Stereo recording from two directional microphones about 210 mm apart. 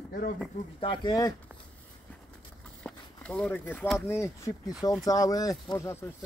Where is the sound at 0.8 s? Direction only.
20° left (ahead or behind).